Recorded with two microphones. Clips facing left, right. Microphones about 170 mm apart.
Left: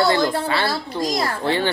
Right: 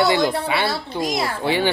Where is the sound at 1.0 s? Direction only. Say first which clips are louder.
Even; 5° right (ahead or behind).